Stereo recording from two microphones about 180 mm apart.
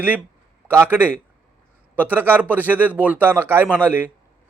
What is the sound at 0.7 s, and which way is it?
A man's voice, 10° right (ahead or behind).